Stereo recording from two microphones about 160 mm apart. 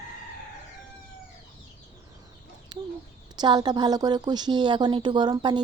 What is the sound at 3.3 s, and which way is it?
A woman's voice, 25° right (ahead or behind).